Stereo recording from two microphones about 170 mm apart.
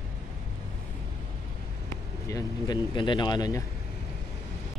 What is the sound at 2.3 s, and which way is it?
Speech, 20° left (ahead or behind).